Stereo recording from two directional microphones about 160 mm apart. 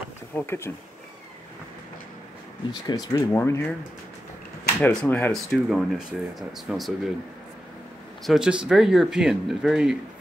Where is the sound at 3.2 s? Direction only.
15° left (ahead or behind).